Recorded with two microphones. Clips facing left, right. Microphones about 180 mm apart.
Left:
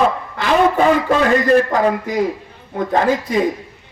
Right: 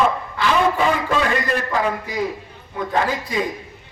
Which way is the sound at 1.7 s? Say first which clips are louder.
Left 5 dB; 40° left (ahead or behind).